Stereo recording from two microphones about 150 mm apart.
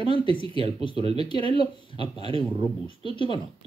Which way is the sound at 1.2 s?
40° right (ahead or behind).